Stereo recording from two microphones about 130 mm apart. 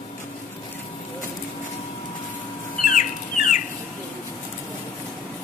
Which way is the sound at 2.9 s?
80° left.